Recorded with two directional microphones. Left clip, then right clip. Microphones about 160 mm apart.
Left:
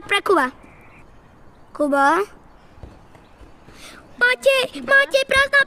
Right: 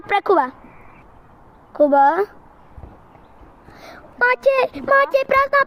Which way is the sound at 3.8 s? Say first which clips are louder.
Right 1 dB; 10° left (ahead or behind).